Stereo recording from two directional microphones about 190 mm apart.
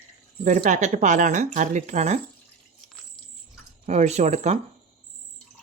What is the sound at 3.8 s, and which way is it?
Speech, 35° right (ahead or behind).